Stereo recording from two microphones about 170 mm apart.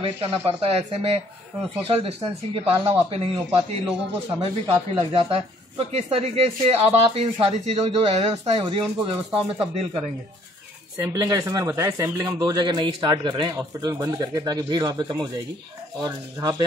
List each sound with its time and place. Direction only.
0.0 s speech: 35° right (ahead or behind)
11.0 s speech: 20° right (ahead or behind)